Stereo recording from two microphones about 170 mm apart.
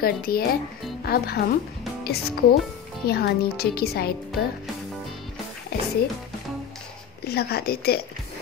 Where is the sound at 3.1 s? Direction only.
65° left (ahead or behind).